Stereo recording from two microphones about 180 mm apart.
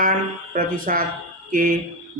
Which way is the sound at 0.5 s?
50° right (ahead or behind).